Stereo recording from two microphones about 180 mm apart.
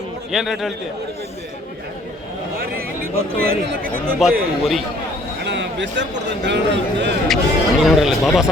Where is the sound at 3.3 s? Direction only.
55° right (ahead or behind).